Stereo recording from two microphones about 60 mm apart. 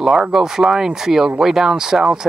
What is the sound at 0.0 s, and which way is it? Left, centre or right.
Speech, centre.